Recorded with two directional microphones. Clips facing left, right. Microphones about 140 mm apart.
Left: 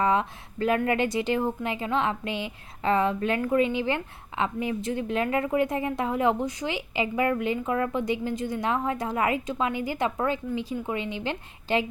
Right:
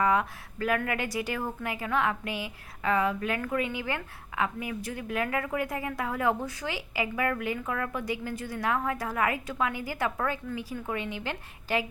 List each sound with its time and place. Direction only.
0.0 s a woman's voice: 25° left (ahead or behind)